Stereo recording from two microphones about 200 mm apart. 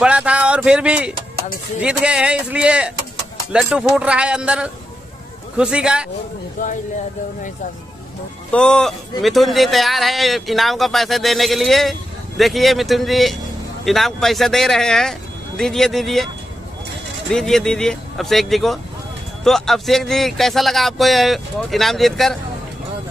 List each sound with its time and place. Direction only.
0.0 s speech: 5° right (ahead or behind)
6.6 s speech: 40° left (ahead or behind)
8.5 s speech: 5° left (ahead or behind)
17.3 s speech: centre (ahead or behind)